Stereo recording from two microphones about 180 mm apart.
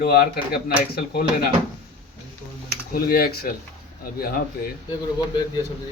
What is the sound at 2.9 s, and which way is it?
Speech, 55° left (ahead or behind).